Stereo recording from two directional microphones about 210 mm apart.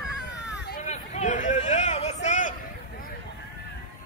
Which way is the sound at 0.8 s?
35° left (ahead or behind).